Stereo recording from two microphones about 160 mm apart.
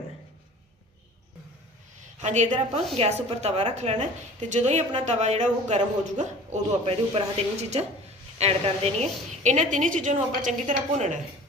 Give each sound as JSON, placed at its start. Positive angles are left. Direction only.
{"t": 2.2, "sound": "a man's voice", "side_deg": -45}